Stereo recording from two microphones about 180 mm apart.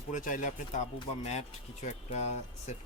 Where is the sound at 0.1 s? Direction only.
45° left (ahead or behind).